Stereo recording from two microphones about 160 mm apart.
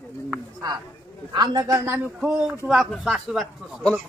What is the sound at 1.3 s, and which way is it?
Speech, 25° right (ahead or behind).